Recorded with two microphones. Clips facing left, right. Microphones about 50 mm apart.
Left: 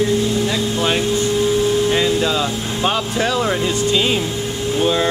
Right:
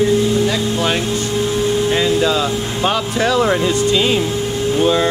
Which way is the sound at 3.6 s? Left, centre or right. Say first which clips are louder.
Right 2 dB; centre.